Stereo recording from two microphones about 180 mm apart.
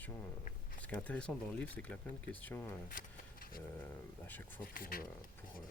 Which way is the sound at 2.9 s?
50° left (ahead or behind).